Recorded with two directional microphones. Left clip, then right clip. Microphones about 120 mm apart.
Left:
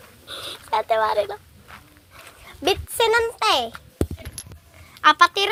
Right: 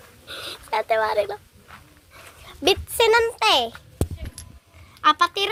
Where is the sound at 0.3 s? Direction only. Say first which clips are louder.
Left 2 dB; 25° right (ahead or behind).